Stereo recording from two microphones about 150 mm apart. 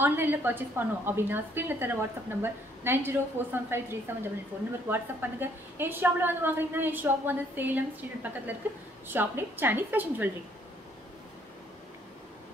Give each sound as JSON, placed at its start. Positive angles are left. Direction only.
{"t": 0.0, "sound": "a woman's voice", "side_deg": -15}